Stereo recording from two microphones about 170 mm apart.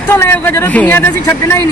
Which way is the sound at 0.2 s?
15° left (ahead or behind).